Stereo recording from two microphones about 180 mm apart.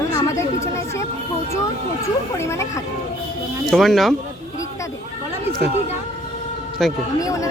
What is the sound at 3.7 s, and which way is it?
Speech, centre (ahead or behind).